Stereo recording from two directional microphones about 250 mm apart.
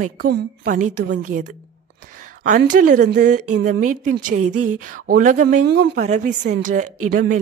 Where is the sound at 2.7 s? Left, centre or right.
Right.